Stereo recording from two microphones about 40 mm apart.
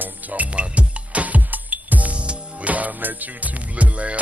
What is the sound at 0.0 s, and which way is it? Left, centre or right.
Music, right.